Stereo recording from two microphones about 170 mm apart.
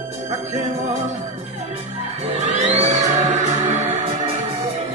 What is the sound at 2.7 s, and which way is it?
Music, 45° right (ahead or behind).